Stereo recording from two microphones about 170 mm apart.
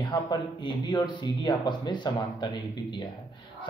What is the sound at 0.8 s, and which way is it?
Speech, 25° left (ahead or behind).